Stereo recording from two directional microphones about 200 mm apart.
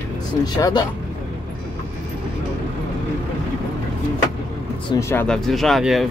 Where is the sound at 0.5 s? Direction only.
20° left (ahead or behind).